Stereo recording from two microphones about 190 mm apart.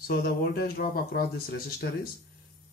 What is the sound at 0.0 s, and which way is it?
Speech, 50° left (ahead or behind).